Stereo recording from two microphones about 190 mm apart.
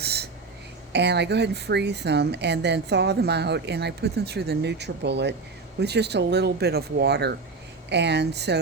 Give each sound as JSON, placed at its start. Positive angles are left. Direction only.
{"t": 0.0, "sound": "throat clearing", "side_deg": -60}
{"t": 0.9, "sound": "a woman's voice", "side_deg": -65}